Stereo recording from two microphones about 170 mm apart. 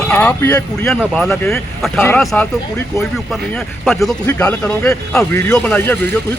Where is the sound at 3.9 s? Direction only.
Centre (ahead or behind).